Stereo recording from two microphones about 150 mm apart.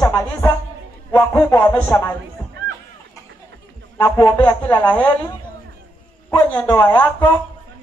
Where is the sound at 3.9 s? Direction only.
20° left (ahead or behind).